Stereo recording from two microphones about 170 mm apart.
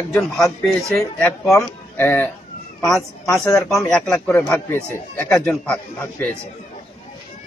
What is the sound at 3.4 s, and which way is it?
Speech, 15° left (ahead or behind).